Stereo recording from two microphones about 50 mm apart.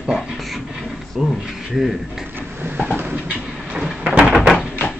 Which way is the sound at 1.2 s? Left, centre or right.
Centre.